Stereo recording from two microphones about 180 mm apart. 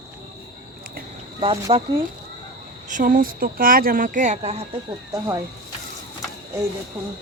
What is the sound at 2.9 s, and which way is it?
Speech, 50° right (ahead or behind).